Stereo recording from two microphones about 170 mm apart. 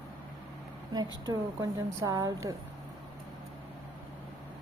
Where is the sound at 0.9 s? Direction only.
20° right (ahead or behind).